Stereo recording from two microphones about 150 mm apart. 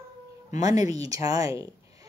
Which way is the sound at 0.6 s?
25° right (ahead or behind).